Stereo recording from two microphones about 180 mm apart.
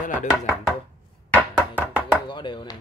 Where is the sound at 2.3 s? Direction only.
25° left (ahead or behind).